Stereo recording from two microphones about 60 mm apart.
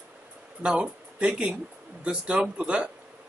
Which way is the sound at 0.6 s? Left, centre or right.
Centre.